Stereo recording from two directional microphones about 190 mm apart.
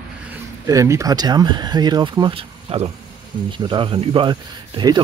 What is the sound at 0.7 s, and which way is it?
Speech, 15° right (ahead or behind).